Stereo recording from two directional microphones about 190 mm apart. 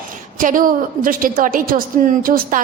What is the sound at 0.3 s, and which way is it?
A woman's voice, 45° right (ahead or behind).